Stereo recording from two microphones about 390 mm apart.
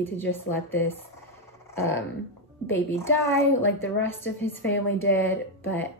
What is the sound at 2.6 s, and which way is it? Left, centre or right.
A woman's voice, centre.